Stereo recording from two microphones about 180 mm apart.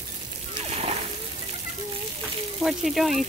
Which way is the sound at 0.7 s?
35° right (ahead or behind).